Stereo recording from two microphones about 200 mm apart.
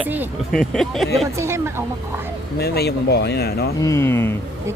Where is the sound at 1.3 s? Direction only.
15° right (ahead or behind).